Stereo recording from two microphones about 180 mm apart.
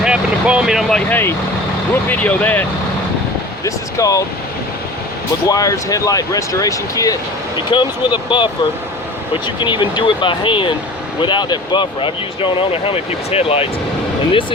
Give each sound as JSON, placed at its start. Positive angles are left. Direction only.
{"t": 0.0, "sound": "speech", "side_deg": -5}
{"t": 5.5, "sound": "speech", "side_deg": 20}
{"t": 9.6, "sound": "speech", "side_deg": 25}